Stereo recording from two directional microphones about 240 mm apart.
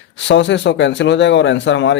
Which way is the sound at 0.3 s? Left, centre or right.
Left.